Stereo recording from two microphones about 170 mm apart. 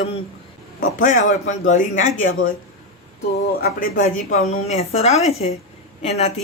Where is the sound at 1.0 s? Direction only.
45° left (ahead or behind).